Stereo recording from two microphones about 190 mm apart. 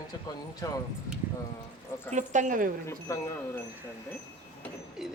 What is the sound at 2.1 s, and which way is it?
Speech, 40° right (ahead or behind).